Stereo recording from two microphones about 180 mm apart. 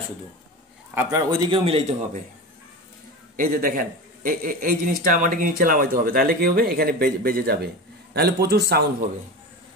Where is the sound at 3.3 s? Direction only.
50° right (ahead or behind).